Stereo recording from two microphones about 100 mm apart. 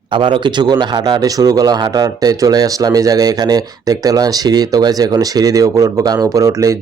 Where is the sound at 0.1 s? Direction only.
55° right (ahead or behind).